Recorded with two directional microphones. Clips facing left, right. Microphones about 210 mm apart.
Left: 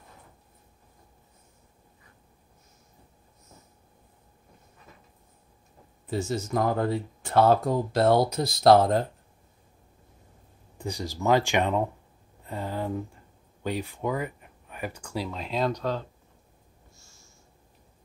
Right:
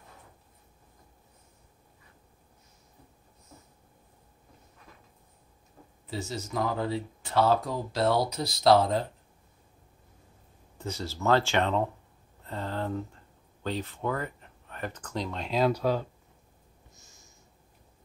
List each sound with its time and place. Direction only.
6.0 s speech: 50° left (ahead or behind)
10.8 s speech: 15° left (ahead or behind); by 16.1 s 10° right (ahead or behind)
16.9 s snort: 20° right (ahead or behind)